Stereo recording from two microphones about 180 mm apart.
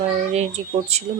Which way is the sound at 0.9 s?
35° right (ahead or behind).